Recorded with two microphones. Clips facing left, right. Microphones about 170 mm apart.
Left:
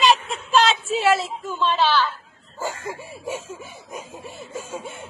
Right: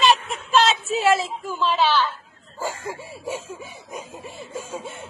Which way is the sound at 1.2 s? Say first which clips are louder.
Even; 5° right (ahead or behind).